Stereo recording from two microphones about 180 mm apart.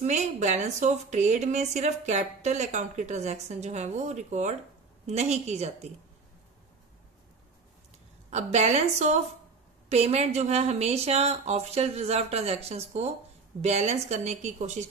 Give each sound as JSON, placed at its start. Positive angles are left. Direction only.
{"t": 0.0, "sound": "speech", "side_deg": -40}
{"t": 8.3, "sound": "speech", "side_deg": -35}